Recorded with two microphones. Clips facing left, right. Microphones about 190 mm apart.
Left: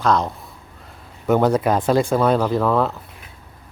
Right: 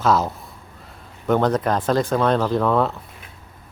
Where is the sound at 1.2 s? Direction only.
10° left (ahead or behind).